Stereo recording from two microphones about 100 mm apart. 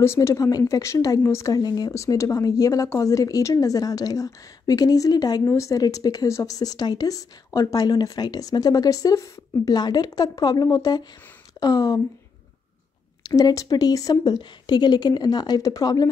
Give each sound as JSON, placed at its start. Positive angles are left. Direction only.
{"t": 0.0, "sound": "speech", "side_deg": 30}
{"t": 2.0, "sound": "speech", "side_deg": 30}
{"t": 5.4, "sound": "speech", "side_deg": 30}
{"t": 13.2, "sound": "speech", "side_deg": 40}